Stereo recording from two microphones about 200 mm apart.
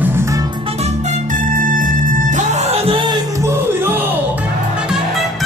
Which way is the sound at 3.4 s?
10° right (ahead or behind).